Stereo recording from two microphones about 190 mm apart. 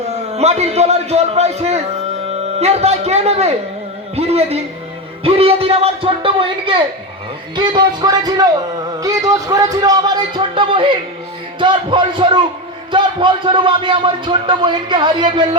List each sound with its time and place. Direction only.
0.1 s a man's voice: 35° right (ahead or behind)